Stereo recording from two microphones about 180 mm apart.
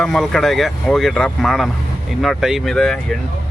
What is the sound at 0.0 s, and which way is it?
Speech, centre (ahead or behind).